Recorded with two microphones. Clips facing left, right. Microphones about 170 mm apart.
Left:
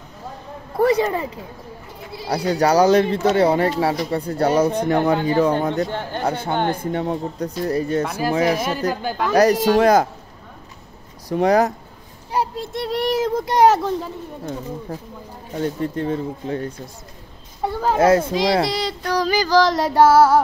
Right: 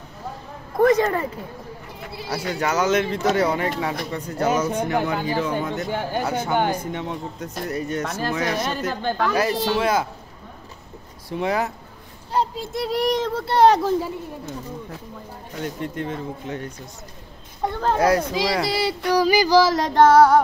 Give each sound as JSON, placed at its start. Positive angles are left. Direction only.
{"t": 0.7, "sound": "a sound", "side_deg": 10}
{"t": 2.2, "sound": "speech", "side_deg": 35}
{"t": 5.9, "sound": "a sound", "side_deg": -10}
{"t": 6.2, "sound": "a child's voice", "side_deg": 30}
{"t": 8.5, "sound": "speech", "side_deg": 10}
{"t": 9.3, "sound": "speech", "side_deg": 40}
{"t": 11.2, "sound": "speech", "side_deg": 40}
{"t": 12.5, "sound": "speech", "side_deg": 0}
{"t": 13.8, "sound": "speech", "side_deg": -5}
{"t": 15.6, "sound": "speech", "side_deg": 35}
{"t": 17.6, "sound": "children playing", "side_deg": 5}
{"t": 17.9, "sound": "a child's voice", "side_deg": 25}
{"t": 18.7, "sound": "a sound", "side_deg": -5}
{"t": 19.9, "sound": "speech", "side_deg": 5}